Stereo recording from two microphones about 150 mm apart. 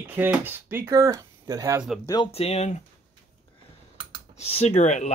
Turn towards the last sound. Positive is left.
turn(degrees=50)  # may be behind; listen again after turning